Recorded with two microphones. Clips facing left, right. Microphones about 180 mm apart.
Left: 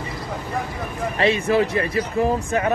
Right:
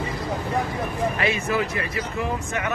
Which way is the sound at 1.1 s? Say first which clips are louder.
Left 5 dB; 30° left (ahead or behind).